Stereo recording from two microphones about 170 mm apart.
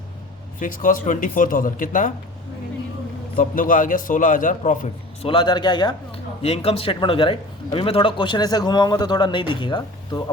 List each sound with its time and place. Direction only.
0.6 s speech: 55° left (ahead or behind)
3.3 s speech: 55° left (ahead or behind)
5.2 s a man's voice: 30° left (ahead or behind)